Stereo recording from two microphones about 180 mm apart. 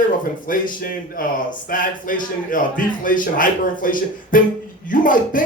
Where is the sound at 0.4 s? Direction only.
50° left (ahead or behind).